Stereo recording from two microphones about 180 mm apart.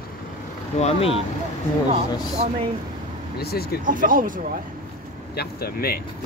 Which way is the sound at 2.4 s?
35° right (ahead or behind).